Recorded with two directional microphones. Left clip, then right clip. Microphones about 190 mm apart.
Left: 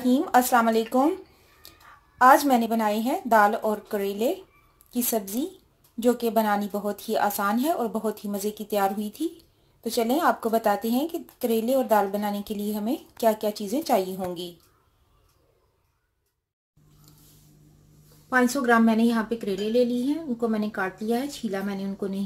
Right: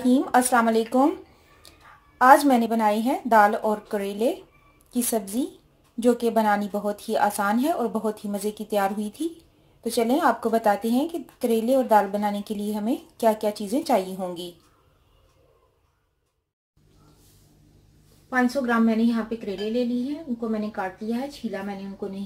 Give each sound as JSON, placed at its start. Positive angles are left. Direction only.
{"t": 0.0, "sound": "speech", "side_deg": 0}
{"t": 2.1, "sound": "speech", "side_deg": 0}
{"t": 18.3, "sound": "a woman's voice", "side_deg": 50}